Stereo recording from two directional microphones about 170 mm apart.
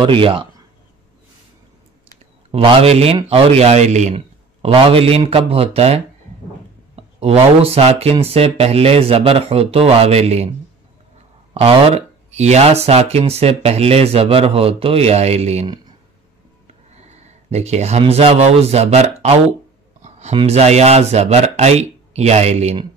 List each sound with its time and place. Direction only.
0.0 s speech: 30° right (ahead or behind)
2.5 s speech: 35° right (ahead or behind)
7.2 s speech: 35° right (ahead or behind)
11.5 s speech: 40° right (ahead or behind)
16.9 s speech: 40° right (ahead or behind)